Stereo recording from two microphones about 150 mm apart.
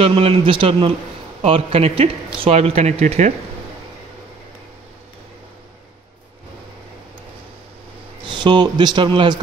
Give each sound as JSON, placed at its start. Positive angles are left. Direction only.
{"t": 0.0, "sound": "a man's voice", "side_deg": -40}
{"t": 8.3, "sound": "a man's voice", "side_deg": -30}